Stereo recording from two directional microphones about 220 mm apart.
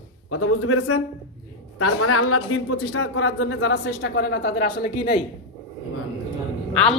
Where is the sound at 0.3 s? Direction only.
85° left; by 4.9 s 45° left (ahead or behind).